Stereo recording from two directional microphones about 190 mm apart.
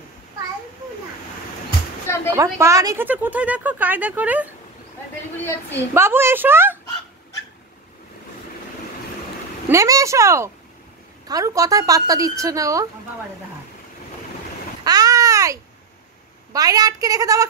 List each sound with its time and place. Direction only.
2.3 s speech: 15° right (ahead or behind)
5.9 s speech: 15° right (ahead or behind)
9.7 s speech: 15° right (ahead or behind)
14.9 s babbling: 20° right (ahead or behind)
16.5 s a woman's voice: 20° right (ahead or behind)